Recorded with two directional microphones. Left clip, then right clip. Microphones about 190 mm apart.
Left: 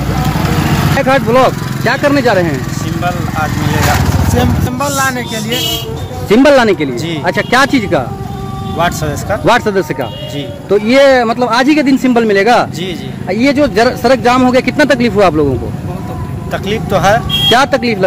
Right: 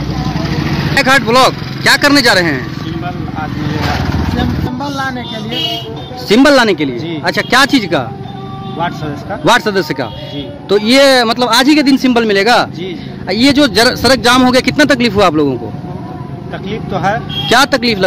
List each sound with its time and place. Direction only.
0.9 s speech: 15° right (ahead or behind)
4.4 s speech: 5° left (ahead or behind)
6.2 s speech: 15° right (ahead or behind)
8.7 s speech: 15° left (ahead or behind)
9.4 s speech: 15° right (ahead or behind)
16.6 s speech: 20° left (ahead or behind)
17.5 s speech: 20° right (ahead or behind)